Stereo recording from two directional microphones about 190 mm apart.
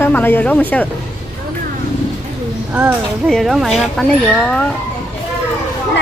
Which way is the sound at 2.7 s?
Centre (ahead or behind).